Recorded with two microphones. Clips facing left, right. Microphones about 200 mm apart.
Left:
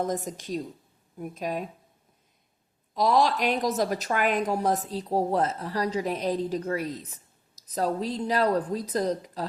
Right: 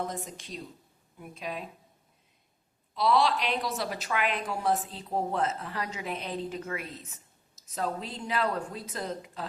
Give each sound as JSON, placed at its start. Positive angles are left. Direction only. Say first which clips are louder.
{"t": 0.0, "sound": "a woman's voice", "louder": "left 6 dB", "side_deg": 45}
{"t": 2.9, "sound": "a woman's voice", "louder": "left 2 dB", "side_deg": 45}